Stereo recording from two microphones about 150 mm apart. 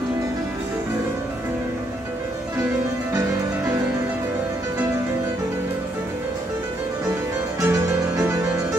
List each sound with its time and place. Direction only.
3.2 s music: 20° right (ahead or behind)
7.6 s music: 20° right (ahead or behind)